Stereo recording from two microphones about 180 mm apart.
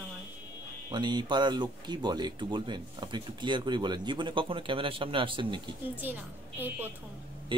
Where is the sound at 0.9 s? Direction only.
25° right (ahead or behind).